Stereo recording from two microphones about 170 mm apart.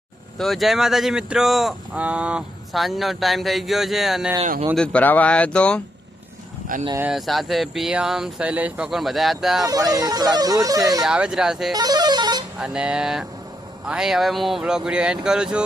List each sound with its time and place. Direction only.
0.3 s speech: centre (ahead or behind)
7.0 s speech: centre (ahead or behind)
9.6 s speech: 20° right (ahead or behind)
11.0 s speech: 5° right (ahead or behind)
11.7 s speech: 25° right (ahead or behind)
12.5 s speech: 5° right (ahead or behind)